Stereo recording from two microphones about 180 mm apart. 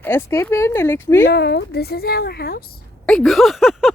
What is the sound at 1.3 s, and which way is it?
Speech, 65° left (ahead or behind).